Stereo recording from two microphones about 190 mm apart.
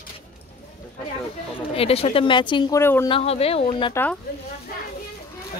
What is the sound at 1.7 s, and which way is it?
Speech, 30° left (ahead or behind).